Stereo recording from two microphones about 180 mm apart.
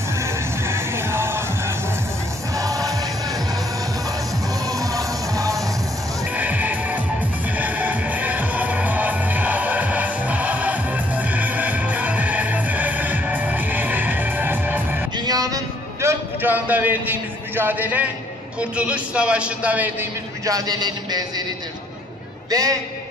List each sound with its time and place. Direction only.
0.1 s music: 15° right (ahead or behind)
4.6 s music: 20° right (ahead or behind)
15.1 s a sound: 20° right (ahead or behind)
18.6 s a man's voice: 5° right (ahead or behind); by 21.2 s 20° right (ahead or behind)
22.5 s a man's voice: 20° right (ahead or behind)